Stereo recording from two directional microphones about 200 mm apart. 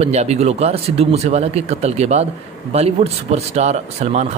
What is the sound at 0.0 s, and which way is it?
Speech, 35° right (ahead or behind).